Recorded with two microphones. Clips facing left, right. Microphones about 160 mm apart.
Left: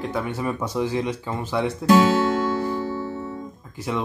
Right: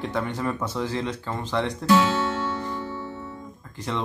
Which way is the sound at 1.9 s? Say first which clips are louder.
Left 4 dB; 40° left (ahead or behind).